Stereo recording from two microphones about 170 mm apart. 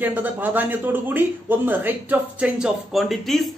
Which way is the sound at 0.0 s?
10° right (ahead or behind).